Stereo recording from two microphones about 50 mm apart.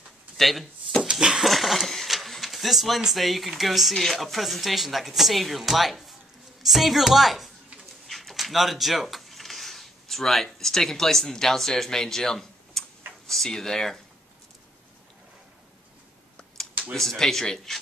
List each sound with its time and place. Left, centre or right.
0.4 s speech: centre
16.9 s speech: centre